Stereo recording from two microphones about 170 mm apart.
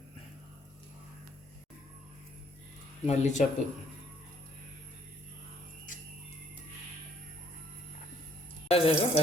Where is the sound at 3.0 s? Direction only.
40° left (ahead or behind).